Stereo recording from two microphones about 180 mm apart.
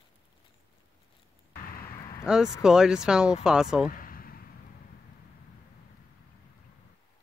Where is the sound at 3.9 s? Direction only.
50° left (ahead or behind).